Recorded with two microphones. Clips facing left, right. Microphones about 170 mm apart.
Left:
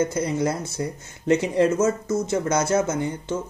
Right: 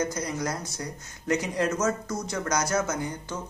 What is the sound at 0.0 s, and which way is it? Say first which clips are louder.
Speech: left 6 dB; 25° left (ahead or behind).